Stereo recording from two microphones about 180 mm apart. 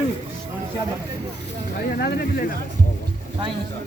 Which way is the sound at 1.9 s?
60° left (ahead or behind).